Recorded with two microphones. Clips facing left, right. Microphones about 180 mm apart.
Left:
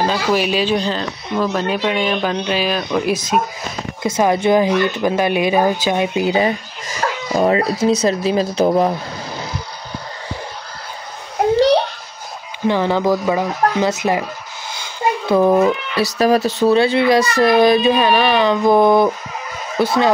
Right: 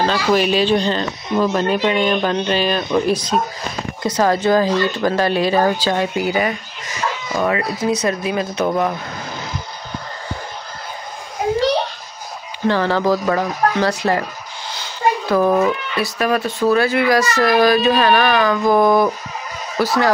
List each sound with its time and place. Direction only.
0.0 s speech: 5° left (ahead or behind)
4.1 s speech: 15° left (ahead or behind)
7.0 s a sound: 55° left (ahead or behind)
7.3 s speech: 30° left (ahead or behind)
12.6 s speech: 15° left (ahead or behind)
15.2 s speech: 20° left (ahead or behind)
16.2 s speech: 35° left (ahead or behind)